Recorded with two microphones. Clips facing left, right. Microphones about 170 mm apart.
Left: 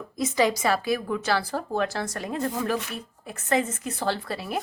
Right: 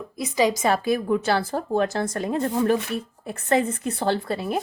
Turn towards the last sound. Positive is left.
turn(degrees=-25)  # may be behind; listen again after turning